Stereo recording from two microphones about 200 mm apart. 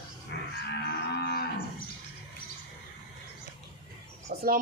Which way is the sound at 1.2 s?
50° left (ahead or behind).